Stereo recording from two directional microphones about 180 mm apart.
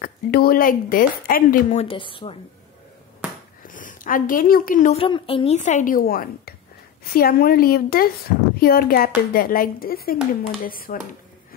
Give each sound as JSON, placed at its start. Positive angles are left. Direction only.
{"t": 0.0, "sound": "speech", "side_deg": 55}
{"t": 1.9, "sound": "a woman's voice", "side_deg": 30}
{"t": 3.6, "sound": "a woman's voice", "side_deg": 45}
{"t": 5.0, "sound": "a woman's voice", "side_deg": 30}